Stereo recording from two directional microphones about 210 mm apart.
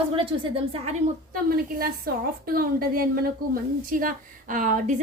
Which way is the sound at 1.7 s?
45° right (ahead or behind).